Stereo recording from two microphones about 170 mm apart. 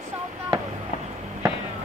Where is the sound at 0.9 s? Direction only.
45° left (ahead or behind).